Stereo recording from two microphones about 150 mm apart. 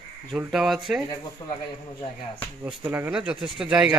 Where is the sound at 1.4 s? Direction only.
35° left (ahead or behind).